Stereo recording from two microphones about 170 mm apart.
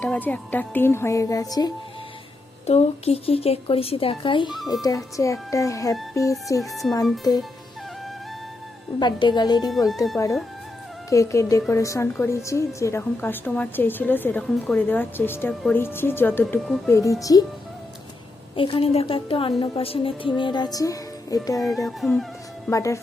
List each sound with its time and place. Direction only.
0.0 s a woman's voice: 10° left (ahead or behind)
2.6 s speech: 40° left (ahead or behind)
4.7 s music: 20° left (ahead or behind)
6.6 s speech: centre (ahead or behind)
7.3 s music: 20° left (ahead or behind)
9.0 s music: 25° left (ahead or behind)
11.7 s a woman's voice: 15° left (ahead or behind)
16.9 s music: 20° left (ahead or behind)
18.5 s speech: 30° left (ahead or behind)
19.7 s music: 35° left (ahead or behind)
21.8 s speech: centre (ahead or behind)
22.7 s music: 20° left (ahead or behind)